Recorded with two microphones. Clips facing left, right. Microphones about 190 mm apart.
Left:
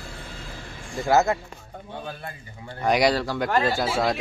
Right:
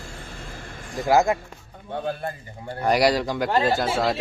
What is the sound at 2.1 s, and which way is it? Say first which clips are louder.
Speech: right 8 dB; 45° right (ahead or behind).